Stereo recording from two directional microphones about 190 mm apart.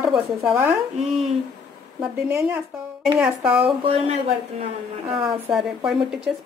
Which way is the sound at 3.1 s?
5° right (ahead or behind).